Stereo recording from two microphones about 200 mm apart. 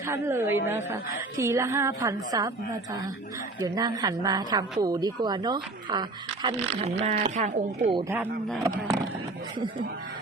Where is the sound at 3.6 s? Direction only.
20° right (ahead or behind); by 7.9 s 40° right (ahead or behind).